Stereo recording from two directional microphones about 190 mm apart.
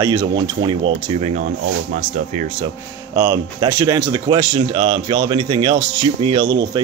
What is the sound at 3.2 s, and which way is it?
Speech, 15° right (ahead or behind).